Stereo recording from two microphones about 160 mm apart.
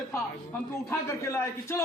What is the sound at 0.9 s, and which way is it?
Speech, 15° left (ahead or behind).